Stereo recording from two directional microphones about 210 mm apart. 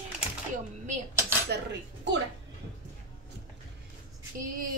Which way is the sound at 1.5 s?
55° right (ahead or behind).